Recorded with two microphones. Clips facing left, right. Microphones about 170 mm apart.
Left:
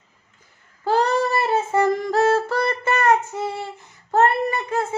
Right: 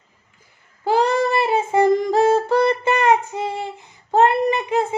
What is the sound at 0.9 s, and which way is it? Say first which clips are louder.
Child singing: right 2 dB; 15° right (ahead or behind).